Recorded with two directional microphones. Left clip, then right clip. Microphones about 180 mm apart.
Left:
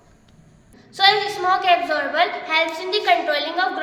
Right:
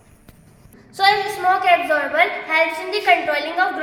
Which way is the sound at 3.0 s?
10° right (ahead or behind).